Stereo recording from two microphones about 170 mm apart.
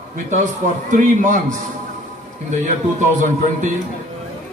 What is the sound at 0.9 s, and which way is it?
Speech, 55° right (ahead or behind).